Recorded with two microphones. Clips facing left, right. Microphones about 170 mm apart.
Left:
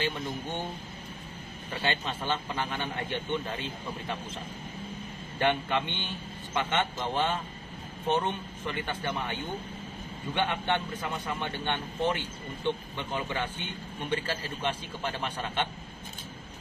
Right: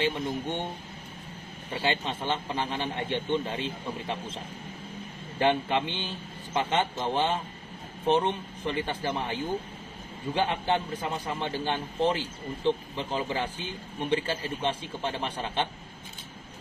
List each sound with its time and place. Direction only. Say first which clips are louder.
0.0 s a man's voice: right 4 dB; 25° right (ahead or behind)
1.8 s a man's voice: right 2 dB; 25° right (ahead or behind)
5.4 s a man's voice: right 2 dB; 25° right (ahead or behind)